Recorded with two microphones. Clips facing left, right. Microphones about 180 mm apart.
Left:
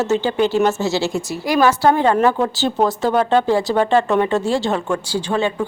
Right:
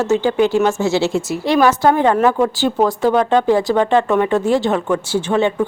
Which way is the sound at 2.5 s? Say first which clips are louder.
Right 2 dB; 15° right (ahead or behind).